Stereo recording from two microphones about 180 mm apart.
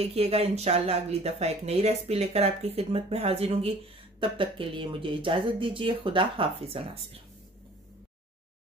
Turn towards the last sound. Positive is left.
turn(degrees=-35)  # may be behind; listen again after turning